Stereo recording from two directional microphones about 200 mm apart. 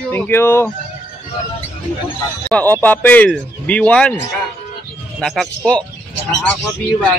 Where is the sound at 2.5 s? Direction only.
10° left (ahead or behind).